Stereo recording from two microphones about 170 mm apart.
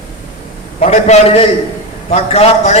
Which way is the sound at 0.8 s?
40° left (ahead or behind).